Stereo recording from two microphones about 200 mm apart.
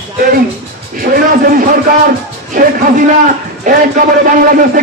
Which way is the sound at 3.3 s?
40° right (ahead or behind).